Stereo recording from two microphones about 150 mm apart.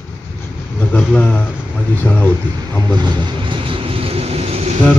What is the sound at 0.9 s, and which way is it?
Speech, 10° left (ahead or behind).